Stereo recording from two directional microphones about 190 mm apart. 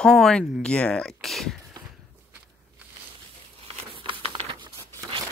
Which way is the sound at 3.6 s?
30° right (ahead or behind).